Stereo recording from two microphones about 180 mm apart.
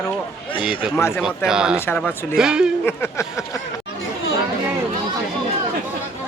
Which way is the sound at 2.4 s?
5° right (ahead or behind).